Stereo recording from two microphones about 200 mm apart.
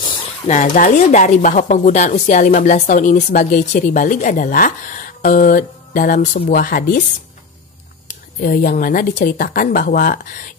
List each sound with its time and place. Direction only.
0.0 s a sound: 25° left (ahead or behind)
0.6 s speech: 40° left (ahead or behind)
8.4 s speech: 45° left (ahead or behind)